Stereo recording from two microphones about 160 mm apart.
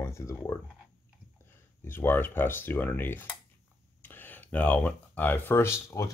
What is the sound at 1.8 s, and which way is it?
Speech, 15° left (ahead or behind).